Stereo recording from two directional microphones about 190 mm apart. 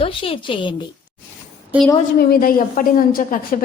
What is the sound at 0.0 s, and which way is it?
Speech, 30° left (ahead or behind).